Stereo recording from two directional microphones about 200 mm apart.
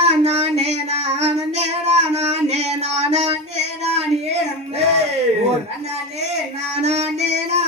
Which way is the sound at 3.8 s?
30° right (ahead or behind).